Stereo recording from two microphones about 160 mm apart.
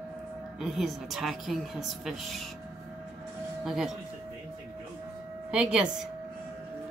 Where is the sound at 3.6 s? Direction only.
Centre (ahead or behind).